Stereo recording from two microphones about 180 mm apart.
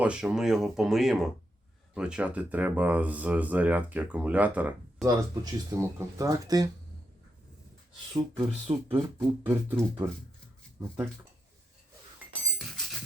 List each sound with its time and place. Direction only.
0.0 s speech: 5° right (ahead or behind); by 6.7 s 20° right (ahead or behind)
8.1 s speech: 20° right (ahead or behind)
8.9 s speech: 10° right (ahead or behind)
12.5 s music: centre (ahead or behind)